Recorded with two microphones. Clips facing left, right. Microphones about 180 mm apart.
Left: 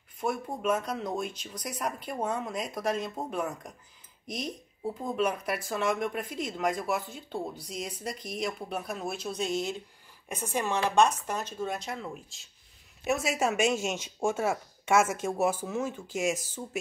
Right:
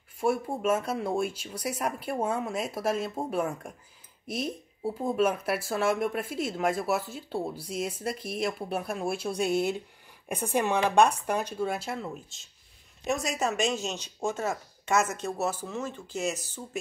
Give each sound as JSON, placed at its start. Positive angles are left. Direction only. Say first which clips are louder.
{"t": 0.2, "sound": "speech", "louder": "right 4 dB", "side_deg": -10}
{"t": 9.5, "sound": "speech", "louder": "right 4 dB", "side_deg": -60}
{"t": 10.7, "sound": "speech", "louder": "right 1 dB", "side_deg": -10}